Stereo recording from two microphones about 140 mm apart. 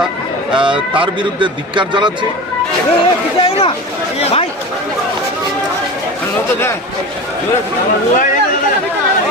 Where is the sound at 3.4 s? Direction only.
40° left (ahead or behind).